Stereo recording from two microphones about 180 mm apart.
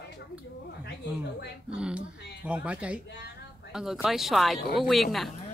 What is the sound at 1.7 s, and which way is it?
Speech, 5° right (ahead or behind).